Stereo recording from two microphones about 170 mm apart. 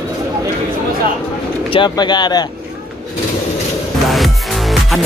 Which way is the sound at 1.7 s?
25° left (ahead or behind).